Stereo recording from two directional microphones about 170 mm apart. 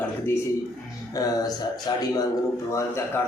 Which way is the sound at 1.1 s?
20° left (ahead or behind).